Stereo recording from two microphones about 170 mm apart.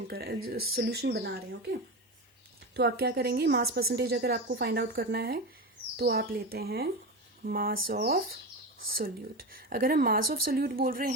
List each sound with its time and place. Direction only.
0.1 s a woman's voice: 65° right (ahead or behind)
2.7 s a woman's voice: 70° right (ahead or behind)